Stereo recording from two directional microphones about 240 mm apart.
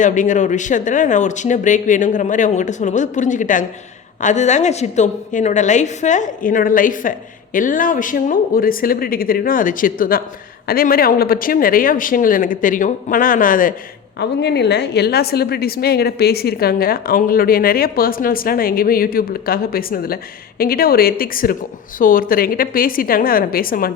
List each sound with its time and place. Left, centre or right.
0.0 s a woman's voice: left